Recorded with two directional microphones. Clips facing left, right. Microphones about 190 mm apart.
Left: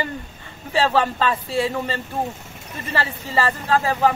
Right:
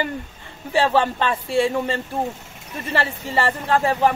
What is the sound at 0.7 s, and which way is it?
Speech, 25° right (ahead or behind).